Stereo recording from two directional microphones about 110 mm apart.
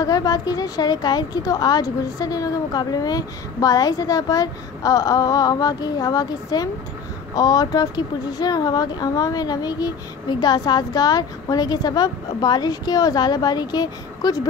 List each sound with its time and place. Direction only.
0.0 s a woman's voice: 35° left (ahead or behind)